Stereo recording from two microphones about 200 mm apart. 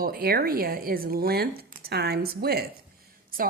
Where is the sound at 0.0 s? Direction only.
45° right (ahead or behind).